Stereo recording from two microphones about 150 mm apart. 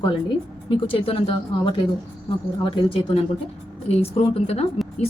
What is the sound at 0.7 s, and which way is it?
Speech, 40° left (ahead or behind).